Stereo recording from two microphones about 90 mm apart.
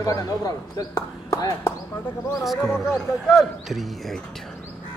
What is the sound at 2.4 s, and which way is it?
Speech, centre (ahead or behind).